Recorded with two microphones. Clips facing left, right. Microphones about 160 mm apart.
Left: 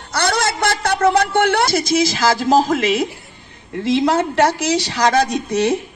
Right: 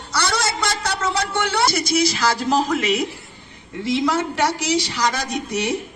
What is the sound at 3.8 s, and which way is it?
Speech, 60° left (ahead or behind).